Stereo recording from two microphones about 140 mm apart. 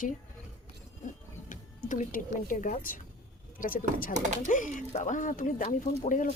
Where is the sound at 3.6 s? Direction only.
85° left.